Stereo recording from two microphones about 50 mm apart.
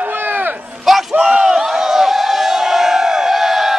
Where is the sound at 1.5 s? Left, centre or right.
Centre.